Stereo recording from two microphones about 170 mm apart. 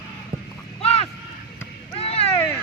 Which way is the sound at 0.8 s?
35° left (ahead or behind).